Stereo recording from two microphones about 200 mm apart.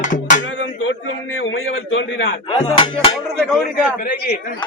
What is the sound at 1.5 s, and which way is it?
Speech, 75° left (ahead or behind).